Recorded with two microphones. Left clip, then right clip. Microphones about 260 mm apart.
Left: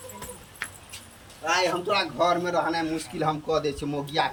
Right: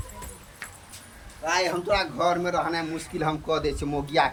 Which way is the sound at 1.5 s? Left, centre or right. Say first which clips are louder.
Even; centre.